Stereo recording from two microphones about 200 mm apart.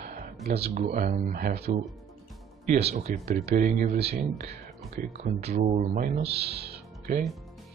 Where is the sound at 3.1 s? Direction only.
45° right (ahead or behind).